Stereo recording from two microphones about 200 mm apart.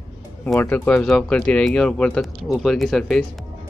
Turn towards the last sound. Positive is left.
turn(degrees=0)  # may be behind; listen again after turning